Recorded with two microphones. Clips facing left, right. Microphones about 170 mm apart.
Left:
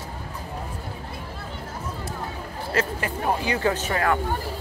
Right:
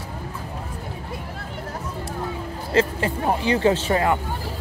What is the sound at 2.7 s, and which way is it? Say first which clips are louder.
Speech: right 6 dB; 25° right (ahead or behind).